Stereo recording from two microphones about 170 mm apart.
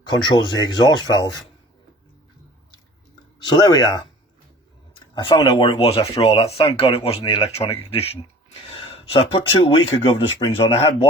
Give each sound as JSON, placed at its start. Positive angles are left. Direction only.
{"t": 0.1, "sound": "speech", "side_deg": 25}
{"t": 3.4, "sound": "speech", "side_deg": 25}